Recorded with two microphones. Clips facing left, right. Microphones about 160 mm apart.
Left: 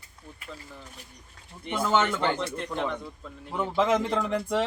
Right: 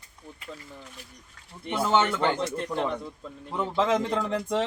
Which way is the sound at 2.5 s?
Centre (ahead or behind).